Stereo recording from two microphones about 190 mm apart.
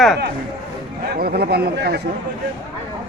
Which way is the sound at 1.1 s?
55° right (ahead or behind).